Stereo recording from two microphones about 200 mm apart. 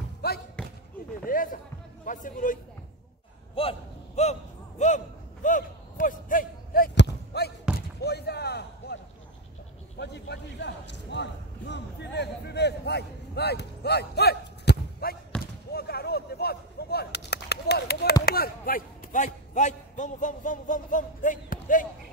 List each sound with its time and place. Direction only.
0.6 s basketball bounce: 5° left (ahead or behind)
1.2 s music: 45° left (ahead or behind)
2.0 s a man's voice: 40° left (ahead or behind)
3.5 s a sound: 30° left (ahead or behind); by 9.0 s 55° left (ahead or behind)
9.9 s a man's voice: 60° left (ahead or behind)
15.7 s a sound: 50° left (ahead or behind)
18.2 s a man's voice: 50° left (ahead or behind)